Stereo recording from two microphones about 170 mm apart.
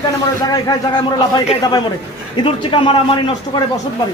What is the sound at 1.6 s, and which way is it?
Speech, 25° left (ahead or behind).